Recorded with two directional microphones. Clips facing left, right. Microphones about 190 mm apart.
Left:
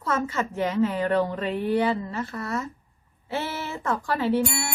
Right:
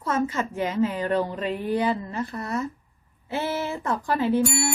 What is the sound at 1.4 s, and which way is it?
Speech, 15° right (ahead or behind).